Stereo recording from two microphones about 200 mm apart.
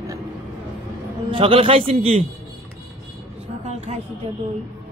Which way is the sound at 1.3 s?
25° right (ahead or behind).